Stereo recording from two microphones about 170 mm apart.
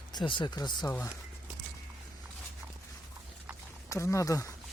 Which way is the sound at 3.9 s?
15° left (ahead or behind).